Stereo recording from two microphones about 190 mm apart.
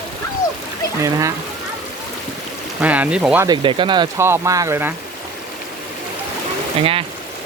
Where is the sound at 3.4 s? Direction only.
25° right (ahead or behind).